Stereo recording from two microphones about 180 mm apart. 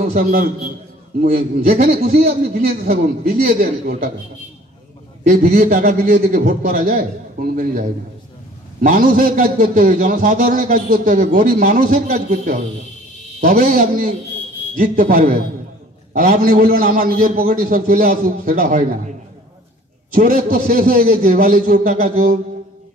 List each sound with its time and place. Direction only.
0.0 s a man's voice: 50° right (ahead or behind)
5.2 s a man's voice: 50° right (ahead or behind)
20.2 s a man's voice: 50° right (ahead or behind)